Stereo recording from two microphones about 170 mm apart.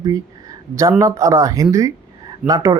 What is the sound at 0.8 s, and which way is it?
Speech, 20° right (ahead or behind).